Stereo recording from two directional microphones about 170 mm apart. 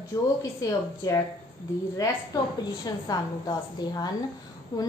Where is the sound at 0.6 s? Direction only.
20° left (ahead or behind).